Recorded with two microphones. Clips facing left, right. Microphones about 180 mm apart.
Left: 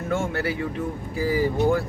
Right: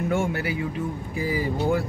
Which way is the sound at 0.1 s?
15° right (ahead or behind).